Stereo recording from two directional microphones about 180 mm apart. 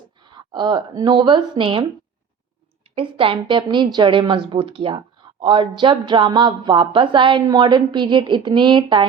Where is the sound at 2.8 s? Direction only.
30° right (ahead or behind).